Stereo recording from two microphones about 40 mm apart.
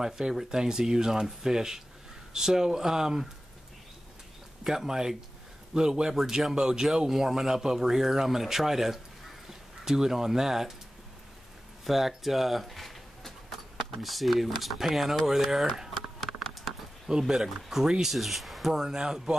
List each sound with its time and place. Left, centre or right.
0.0 s speech: centre
4.6 s speech: centre
11.8 s speech: centre
15.9 s a sound: centre
17.1 s speech: centre